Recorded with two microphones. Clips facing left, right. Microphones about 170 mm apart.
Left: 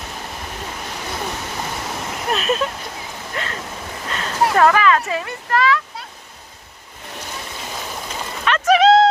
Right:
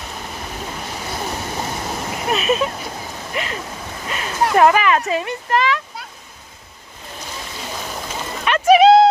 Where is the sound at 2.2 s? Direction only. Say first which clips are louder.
Right 2 dB; 5° right (ahead or behind); by 5.8 s 20° right (ahead or behind).